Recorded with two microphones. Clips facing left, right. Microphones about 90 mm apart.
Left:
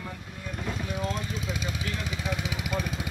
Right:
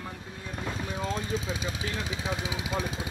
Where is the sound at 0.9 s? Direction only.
35° right (ahead or behind).